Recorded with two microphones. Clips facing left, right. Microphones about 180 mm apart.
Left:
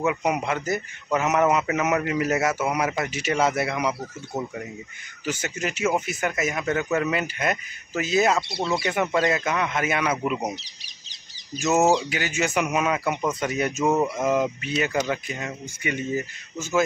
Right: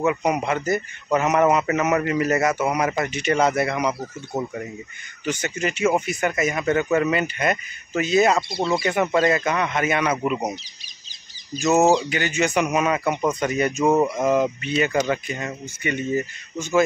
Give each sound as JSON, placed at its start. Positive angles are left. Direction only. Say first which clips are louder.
{"t": 0.0, "sound": "speech", "louder": "right 3 dB", "side_deg": 5}
{"t": 5.2, "sound": "speech", "louder": "right 3 dB", "side_deg": 5}
{"t": 10.5, "sound": "bird", "louder": "right 2 dB", "side_deg": 70}
{"t": 11.6, "sound": "speech", "louder": "right 3 dB", "side_deg": 5}